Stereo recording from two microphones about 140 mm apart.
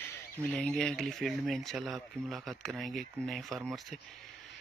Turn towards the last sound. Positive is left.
turn(degrees=0)  # may be behind; listen again after turning